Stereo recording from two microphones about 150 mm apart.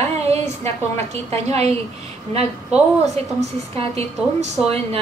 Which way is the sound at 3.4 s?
45° right (ahead or behind).